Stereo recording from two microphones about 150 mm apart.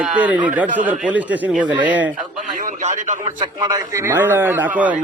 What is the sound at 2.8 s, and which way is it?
Speech, 55° right (ahead or behind).